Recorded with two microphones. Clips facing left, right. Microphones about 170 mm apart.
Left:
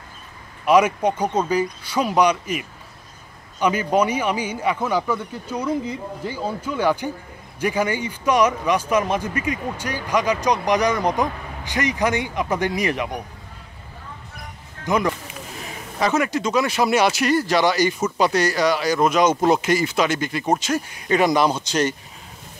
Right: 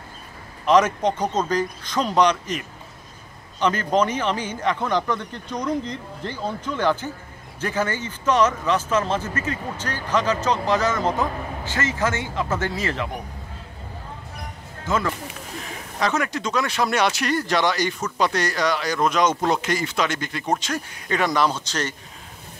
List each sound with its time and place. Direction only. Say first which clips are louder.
0.7 s speech: left 1 dB; 10° left (ahead or behind)
14.9 s speech: left 3 dB; 15° left (ahead or behind)
16.0 s speech: left 3 dB; 5° left (ahead or behind)